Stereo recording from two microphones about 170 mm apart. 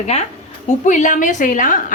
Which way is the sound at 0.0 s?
40° left (ahead or behind).